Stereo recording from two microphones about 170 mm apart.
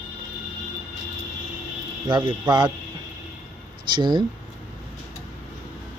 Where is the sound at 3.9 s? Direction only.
25° right (ahead or behind).